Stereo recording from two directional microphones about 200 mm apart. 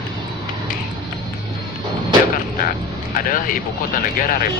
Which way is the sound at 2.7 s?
45° left (ahead or behind).